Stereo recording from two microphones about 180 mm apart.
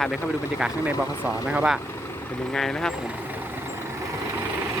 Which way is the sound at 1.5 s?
5° right (ahead or behind).